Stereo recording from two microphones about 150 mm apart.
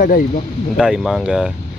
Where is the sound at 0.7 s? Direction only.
Centre (ahead or behind).